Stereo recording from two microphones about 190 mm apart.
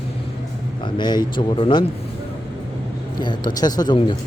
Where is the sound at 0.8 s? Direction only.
25° left (ahead or behind).